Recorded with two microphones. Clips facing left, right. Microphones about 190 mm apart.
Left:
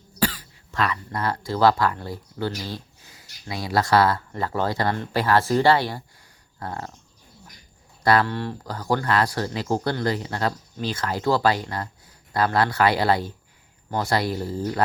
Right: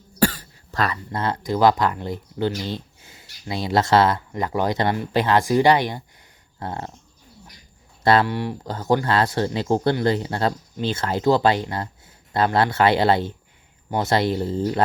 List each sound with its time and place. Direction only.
0.2 s cough: 45° right (ahead or behind)
1.1 s speech: 20° right (ahead or behind)
8.0 s speech: 25° right (ahead or behind)
8.3 s speech: 15° right (ahead or behind)
8.6 s speech: 25° right (ahead or behind)